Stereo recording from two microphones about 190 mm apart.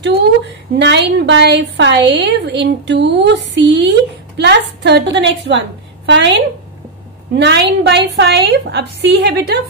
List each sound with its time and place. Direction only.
0.7 s a woman's voice: 70° right (ahead or behind)